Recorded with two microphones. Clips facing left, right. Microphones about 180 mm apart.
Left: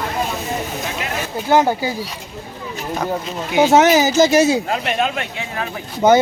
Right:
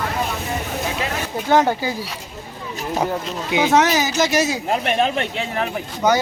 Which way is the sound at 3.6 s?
25° left (ahead or behind).